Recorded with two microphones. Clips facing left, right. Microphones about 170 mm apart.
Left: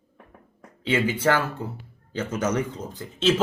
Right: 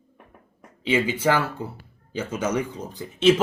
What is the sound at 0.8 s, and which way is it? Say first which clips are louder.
Speech: right 1 dB; 10° right (ahead or behind).